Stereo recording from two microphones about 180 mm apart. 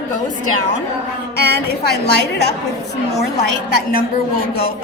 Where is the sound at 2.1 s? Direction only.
65° left (ahead or behind).